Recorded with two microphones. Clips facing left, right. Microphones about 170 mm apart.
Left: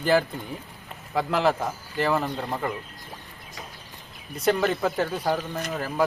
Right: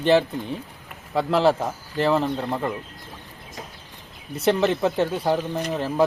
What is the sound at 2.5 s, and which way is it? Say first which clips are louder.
Speech: right 3 dB; 5° right (ahead or behind).